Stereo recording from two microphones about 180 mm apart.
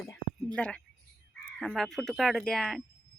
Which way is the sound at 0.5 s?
5° left (ahead or behind).